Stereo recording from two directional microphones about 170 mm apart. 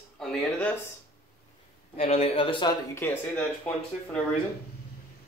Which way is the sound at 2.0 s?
35° left (ahead or behind).